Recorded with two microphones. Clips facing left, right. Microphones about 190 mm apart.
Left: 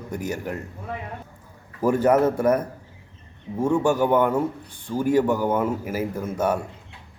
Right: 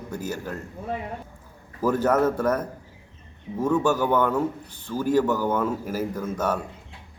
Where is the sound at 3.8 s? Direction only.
10° left (ahead or behind).